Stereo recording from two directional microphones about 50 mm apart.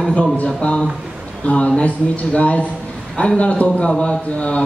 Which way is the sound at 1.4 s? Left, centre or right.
Left.